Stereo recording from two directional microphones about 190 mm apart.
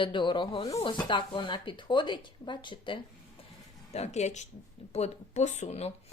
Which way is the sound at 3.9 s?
35° left (ahead or behind).